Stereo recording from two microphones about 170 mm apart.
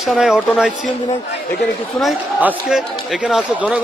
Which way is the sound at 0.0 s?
Centre (ahead or behind).